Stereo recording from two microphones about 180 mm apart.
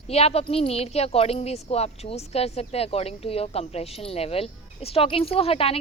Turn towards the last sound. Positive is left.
turn(degrees=30)  # may be behind; listen again after turning